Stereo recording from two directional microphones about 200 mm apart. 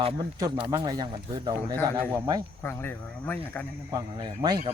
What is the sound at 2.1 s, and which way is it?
Speech, 10° right (ahead or behind).